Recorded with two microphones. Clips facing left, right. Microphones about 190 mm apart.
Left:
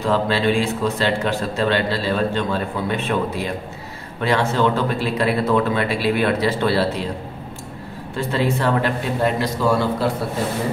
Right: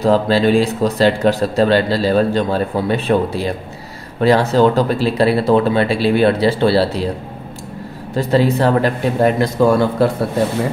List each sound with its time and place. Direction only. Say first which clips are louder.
0.0 s speech: right 6 dB; 40° right (ahead or behind)
8.2 s speech: right 7 dB; 40° right (ahead or behind)